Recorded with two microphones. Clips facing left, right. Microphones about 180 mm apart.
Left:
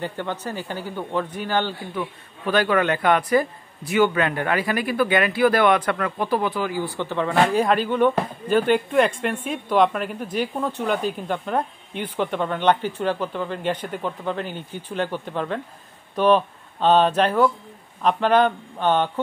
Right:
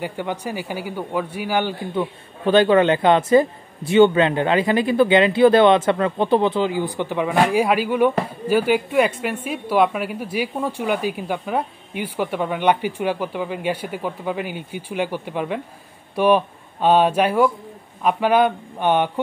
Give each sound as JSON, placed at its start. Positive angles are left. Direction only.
{"t": 0.0, "sound": "speech", "side_deg": -10}
{"t": 2.0, "sound": "speech", "side_deg": -25}